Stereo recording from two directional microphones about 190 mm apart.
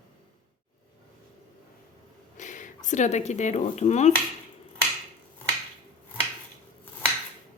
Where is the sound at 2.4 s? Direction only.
40° left (ahead or behind).